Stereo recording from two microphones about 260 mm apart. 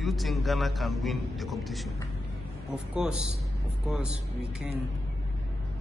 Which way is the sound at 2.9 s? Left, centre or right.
Centre.